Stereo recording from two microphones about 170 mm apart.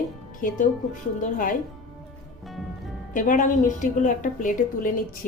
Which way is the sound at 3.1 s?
50° left (ahead or behind).